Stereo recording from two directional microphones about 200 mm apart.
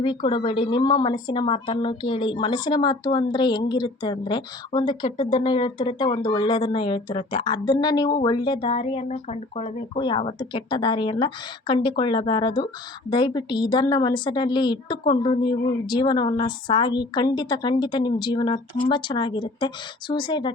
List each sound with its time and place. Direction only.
0.0 s a woman's voice: 25° left (ahead or behind)